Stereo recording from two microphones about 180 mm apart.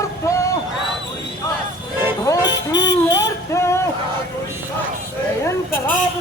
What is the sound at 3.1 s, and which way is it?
Synthetic singing, 15° left (ahead or behind).